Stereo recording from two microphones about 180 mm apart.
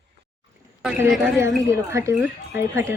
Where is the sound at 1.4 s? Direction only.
15° right (ahead or behind).